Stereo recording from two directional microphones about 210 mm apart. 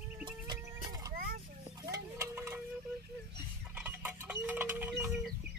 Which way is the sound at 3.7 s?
10° right (ahead or behind).